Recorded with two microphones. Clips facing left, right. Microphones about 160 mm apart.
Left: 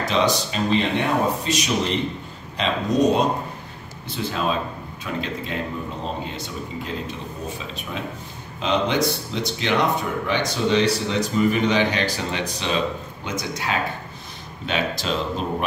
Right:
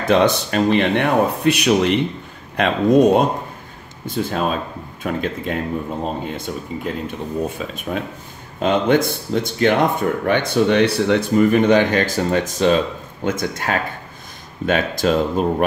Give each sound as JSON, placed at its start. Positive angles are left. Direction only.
{"t": 0.0, "sound": "speech", "side_deg": -55}